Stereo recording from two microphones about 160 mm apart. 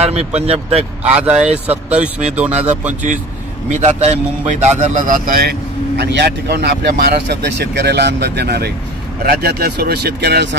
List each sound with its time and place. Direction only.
0.0 s speech: 40° right (ahead or behind)
1.1 s speech: 10° right (ahead or behind)
2.5 s a man's voice: 45° right (ahead or behind); by 8.7 s 90° right
9.2 s a man's voice: 75° right (ahead or behind)